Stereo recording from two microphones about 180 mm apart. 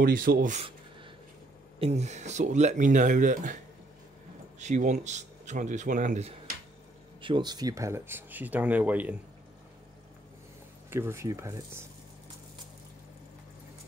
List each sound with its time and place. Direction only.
0.0 s speech: 50° right (ahead or behind)
1.8 s speech: 35° right (ahead or behind)
4.6 s speech: 40° right (ahead or behind)
7.2 s speech: 25° right (ahead or behind); by 9.1 s 10° right (ahead or behind)
10.9 s speech: 15° right (ahead or behind)